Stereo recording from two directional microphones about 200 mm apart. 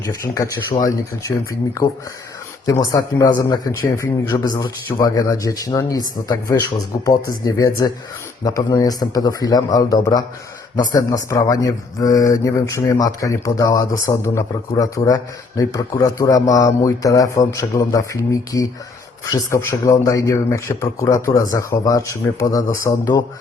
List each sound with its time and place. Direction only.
0.5 s a man's voice: 15° left (ahead or behind)
2.6 s a man's voice: 15° left (ahead or behind)